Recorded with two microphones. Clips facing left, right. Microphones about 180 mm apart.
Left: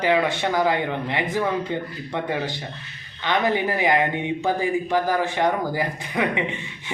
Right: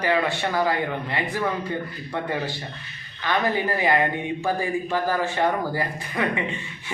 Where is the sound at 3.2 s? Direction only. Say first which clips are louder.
Left 2 dB; 15° left (ahead or behind).